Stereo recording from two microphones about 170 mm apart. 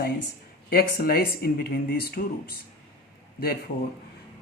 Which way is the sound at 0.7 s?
65° left (ahead or behind).